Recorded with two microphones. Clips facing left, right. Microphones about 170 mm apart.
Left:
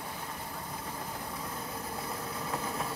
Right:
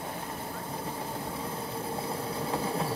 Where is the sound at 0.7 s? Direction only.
30° right (ahead or behind).